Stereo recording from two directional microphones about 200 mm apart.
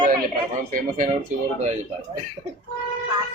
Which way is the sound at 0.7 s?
40° right (ahead or behind).